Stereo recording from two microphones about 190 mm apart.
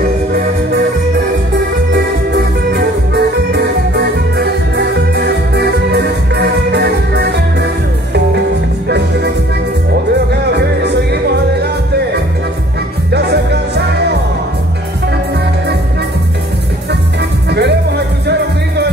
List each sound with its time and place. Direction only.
2.3 s music: 55° right (ahead or behind)
13.1 s music: 60° right (ahead or behind)
17.5 s music: 60° right (ahead or behind)